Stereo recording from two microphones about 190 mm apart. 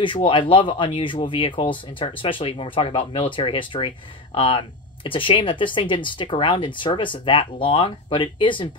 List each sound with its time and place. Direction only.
0.0 s speech: 25° left (ahead or behind)